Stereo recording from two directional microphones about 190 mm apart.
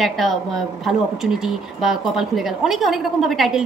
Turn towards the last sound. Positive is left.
turn(degrees=0)  # may be behind; listen again after turning